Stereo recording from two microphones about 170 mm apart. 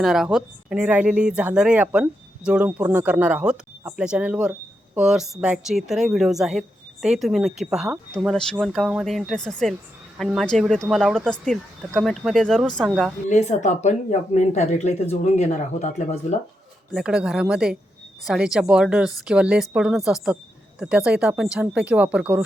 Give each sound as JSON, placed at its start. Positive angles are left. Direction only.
{"t": 0.0, "sound": "a woman's voice", "side_deg": 0}
{"t": 13.2, "sound": "speech", "side_deg": 45}
{"t": 16.9, "sound": "a woman's voice", "side_deg": -5}